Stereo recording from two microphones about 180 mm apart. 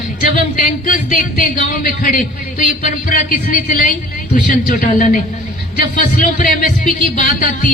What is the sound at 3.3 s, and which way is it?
Speech, 50° left (ahead or behind).